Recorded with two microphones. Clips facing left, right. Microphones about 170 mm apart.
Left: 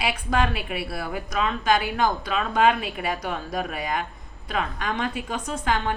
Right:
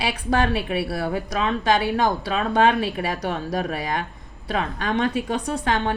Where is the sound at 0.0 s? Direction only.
35° right (ahead or behind).